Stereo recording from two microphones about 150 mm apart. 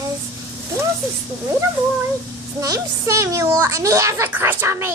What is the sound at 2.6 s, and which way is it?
A child's voice, 20° right (ahead or behind).